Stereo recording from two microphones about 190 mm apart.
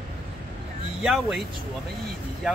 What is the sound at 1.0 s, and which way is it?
Speech, 5° right (ahead or behind).